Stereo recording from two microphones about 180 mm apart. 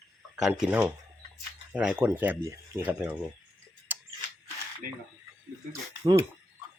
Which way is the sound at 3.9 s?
10° right (ahead or behind).